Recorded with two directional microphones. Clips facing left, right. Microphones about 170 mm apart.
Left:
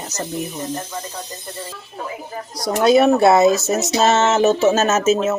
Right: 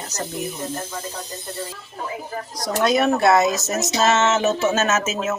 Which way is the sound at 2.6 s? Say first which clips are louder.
Left 5 dB; 30° left (ahead or behind).